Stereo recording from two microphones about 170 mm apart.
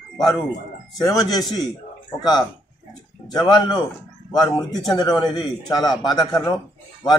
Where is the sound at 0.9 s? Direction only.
25° left (ahead or behind).